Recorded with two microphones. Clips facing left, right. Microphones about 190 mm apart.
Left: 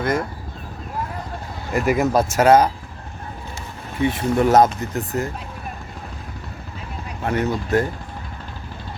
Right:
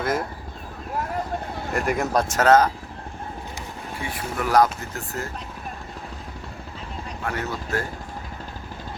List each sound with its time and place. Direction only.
0.0 s speech: centre (ahead or behind)
1.7 s speech: centre (ahead or behind)
4.0 s speech: 25° left (ahead or behind)
7.2 s speech: 20° left (ahead or behind)